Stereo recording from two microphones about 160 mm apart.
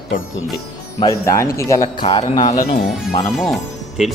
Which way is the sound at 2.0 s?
40° left (ahead or behind).